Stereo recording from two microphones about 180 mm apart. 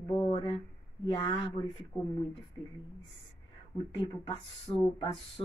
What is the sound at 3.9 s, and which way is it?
Speech, 30° left (ahead or behind).